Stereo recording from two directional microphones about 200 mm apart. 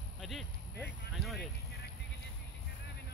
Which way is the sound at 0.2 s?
Centre (ahead or behind).